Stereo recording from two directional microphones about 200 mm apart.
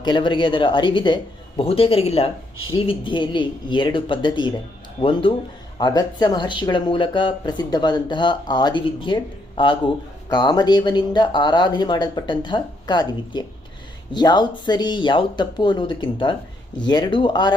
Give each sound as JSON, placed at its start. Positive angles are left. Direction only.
{"t": 0.0, "sound": "speech", "side_deg": 25}